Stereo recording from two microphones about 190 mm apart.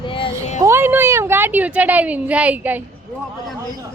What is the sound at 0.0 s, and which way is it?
Music, 25° left (ahead or behind).